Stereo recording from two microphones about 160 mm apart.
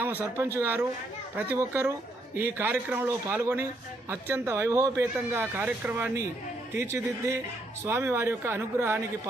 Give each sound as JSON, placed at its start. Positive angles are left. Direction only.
{"t": 0.0, "sound": "a man's voice", "side_deg": -15}